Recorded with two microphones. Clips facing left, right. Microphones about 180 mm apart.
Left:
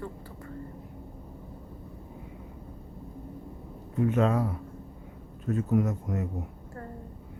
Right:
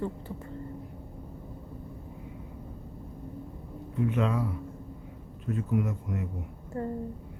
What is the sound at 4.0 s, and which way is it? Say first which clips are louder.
Speech: left 3 dB; 45° left (ahead or behind).